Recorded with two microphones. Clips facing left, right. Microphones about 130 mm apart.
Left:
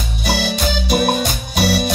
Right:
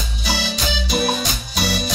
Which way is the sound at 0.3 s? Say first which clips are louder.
Left 5 dB; 55° left (ahead or behind).